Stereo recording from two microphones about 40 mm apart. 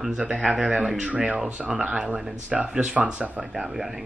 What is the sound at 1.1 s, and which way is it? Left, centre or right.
Speech, right.